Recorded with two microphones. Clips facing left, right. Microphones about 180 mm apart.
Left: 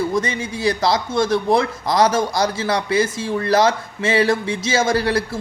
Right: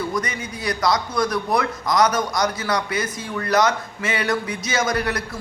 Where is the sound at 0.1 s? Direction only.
25° left (ahead or behind).